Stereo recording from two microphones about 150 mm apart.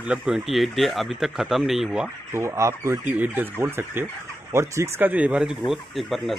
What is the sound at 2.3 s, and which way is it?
Speech, 20° right (ahead or behind).